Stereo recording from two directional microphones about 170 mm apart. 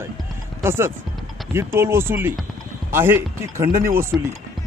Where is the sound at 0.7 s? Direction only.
15° right (ahead or behind).